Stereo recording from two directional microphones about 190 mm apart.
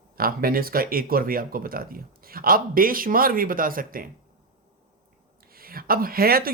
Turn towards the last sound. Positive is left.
turn(degrees=-50)  # may be behind; listen again after turning